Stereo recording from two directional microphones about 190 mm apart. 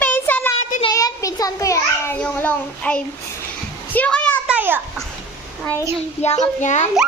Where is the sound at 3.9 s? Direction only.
5° left (ahead or behind).